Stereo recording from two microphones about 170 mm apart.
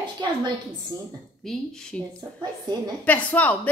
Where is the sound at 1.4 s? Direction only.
Centre (ahead or behind).